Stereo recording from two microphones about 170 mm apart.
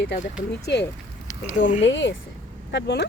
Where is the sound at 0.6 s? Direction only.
85° left.